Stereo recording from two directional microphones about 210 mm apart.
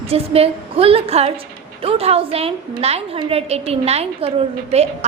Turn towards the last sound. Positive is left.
turn(degrees=-30)  # may be behind; listen again after turning